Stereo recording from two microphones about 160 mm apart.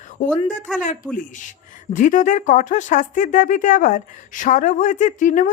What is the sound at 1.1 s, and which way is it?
Speech, 55° left (ahead or behind).